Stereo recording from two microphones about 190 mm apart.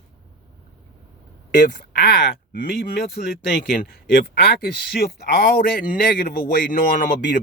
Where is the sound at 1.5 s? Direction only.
50° left (ahead or behind).